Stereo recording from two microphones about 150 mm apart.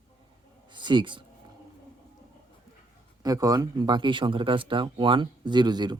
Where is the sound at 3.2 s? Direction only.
25° right (ahead or behind).